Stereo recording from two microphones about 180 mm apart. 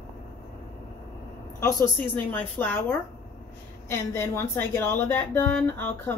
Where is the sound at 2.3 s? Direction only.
10° left (ahead or behind).